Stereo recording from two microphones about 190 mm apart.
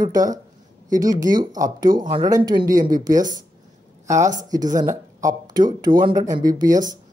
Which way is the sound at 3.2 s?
40° right (ahead or behind).